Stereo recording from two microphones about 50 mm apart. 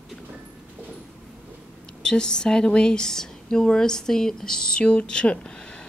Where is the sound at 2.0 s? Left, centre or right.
Centre.